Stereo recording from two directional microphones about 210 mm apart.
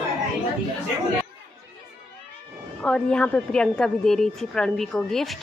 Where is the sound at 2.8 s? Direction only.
5° left (ahead or behind).